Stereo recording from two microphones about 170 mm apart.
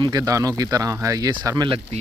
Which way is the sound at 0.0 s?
20° right (ahead or behind).